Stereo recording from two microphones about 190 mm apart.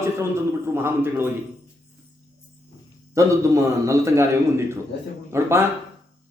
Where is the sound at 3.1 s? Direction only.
15° right (ahead or behind).